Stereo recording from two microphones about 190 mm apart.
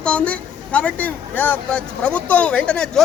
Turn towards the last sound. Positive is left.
turn(degrees=5)  # may be behind; listen again after turning